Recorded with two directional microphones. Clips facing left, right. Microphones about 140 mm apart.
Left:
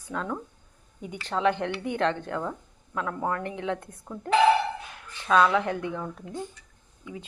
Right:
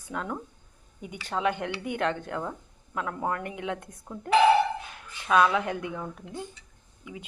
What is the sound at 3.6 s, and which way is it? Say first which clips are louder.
Speech: left 3 dB; 15° right (ahead or behind).